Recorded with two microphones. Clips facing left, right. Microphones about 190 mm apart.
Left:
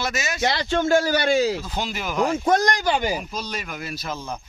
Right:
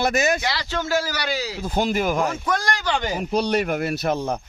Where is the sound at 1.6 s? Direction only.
50° right (ahead or behind).